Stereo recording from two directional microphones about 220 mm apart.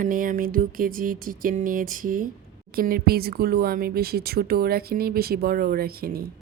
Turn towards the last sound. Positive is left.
turn(degrees=-45)  # may be behind; listen again after turning